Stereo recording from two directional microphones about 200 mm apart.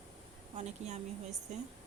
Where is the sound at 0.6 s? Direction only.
35° right (ahead or behind).